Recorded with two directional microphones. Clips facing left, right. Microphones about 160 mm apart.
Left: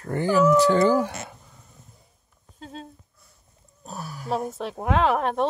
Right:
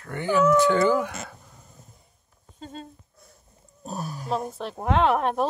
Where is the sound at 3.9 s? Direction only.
20° right (ahead or behind).